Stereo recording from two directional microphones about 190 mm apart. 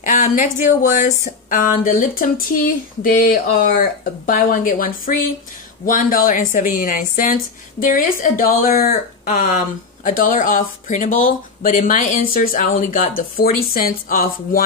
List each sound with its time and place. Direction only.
0.0 s speech: 45° left (ahead or behind)